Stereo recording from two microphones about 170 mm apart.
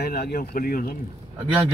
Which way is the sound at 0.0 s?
65° left (ahead or behind).